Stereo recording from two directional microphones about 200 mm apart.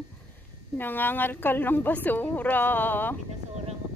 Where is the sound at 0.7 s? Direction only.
10° left (ahead or behind).